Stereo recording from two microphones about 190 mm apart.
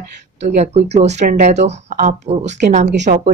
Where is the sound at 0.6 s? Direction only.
35° right (ahead or behind).